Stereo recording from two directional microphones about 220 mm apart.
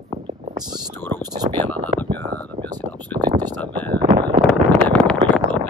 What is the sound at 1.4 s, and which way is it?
Speech, 30° right (ahead or behind).